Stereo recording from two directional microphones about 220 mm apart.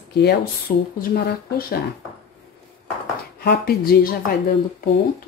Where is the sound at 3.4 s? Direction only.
45° left (ahead or behind).